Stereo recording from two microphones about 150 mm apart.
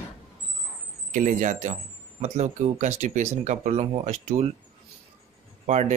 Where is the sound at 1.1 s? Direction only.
55° right (ahead or behind).